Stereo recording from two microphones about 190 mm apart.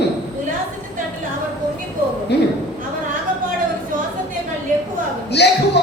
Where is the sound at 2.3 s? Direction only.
60° left (ahead or behind).